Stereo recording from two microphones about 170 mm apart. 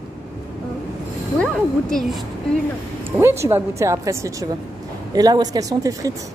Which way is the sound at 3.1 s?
15° right (ahead or behind).